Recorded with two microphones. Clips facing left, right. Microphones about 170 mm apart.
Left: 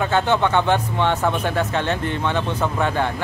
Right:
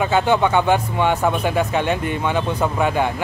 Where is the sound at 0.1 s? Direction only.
10° right (ahead or behind).